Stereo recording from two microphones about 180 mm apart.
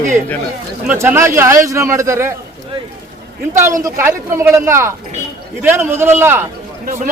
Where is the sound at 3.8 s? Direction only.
15° right (ahead or behind).